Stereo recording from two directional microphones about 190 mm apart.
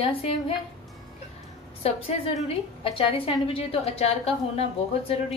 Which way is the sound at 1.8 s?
30° left (ahead or behind).